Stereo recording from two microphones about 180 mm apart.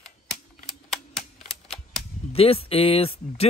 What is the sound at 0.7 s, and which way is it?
Typing, centre (ahead or behind).